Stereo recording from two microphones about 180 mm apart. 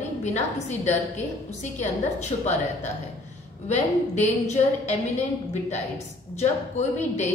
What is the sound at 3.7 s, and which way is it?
A woman's voice, 40° left (ahead or behind).